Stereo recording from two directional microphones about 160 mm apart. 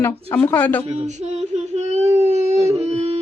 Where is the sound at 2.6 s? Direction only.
15° right (ahead or behind).